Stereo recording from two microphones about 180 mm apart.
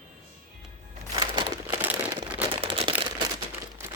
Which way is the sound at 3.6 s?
15° right (ahead or behind).